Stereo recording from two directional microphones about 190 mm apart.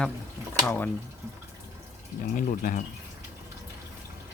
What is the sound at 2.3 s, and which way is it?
Speech, 45° left (ahead or behind).